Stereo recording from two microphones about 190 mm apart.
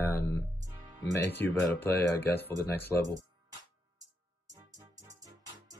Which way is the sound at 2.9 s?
5° right (ahead or behind).